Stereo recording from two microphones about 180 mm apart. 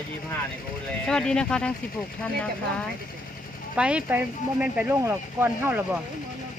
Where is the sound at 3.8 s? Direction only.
5° right (ahead or behind).